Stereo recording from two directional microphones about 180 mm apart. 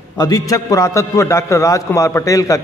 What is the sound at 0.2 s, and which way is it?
A man's voice, 20° left (ahead or behind).